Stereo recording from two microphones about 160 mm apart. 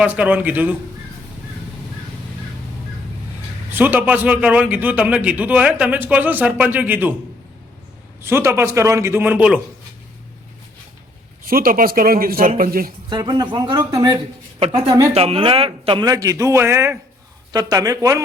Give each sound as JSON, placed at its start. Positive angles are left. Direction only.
{"t": 0.0, "sound": "a man's voice", "side_deg": -10}
{"t": 3.7, "sound": "a man's voice", "side_deg": -10}
{"t": 8.2, "sound": "a man's voice", "side_deg": -15}
{"t": 11.4, "sound": "a man's voice", "side_deg": -65}
{"t": 13.1, "sound": "a man's voice", "side_deg": -25}
{"t": 15.1, "sound": "a man's voice", "side_deg": -40}